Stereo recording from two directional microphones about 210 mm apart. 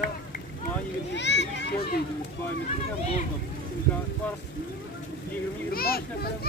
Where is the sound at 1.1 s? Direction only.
55° left (ahead or behind).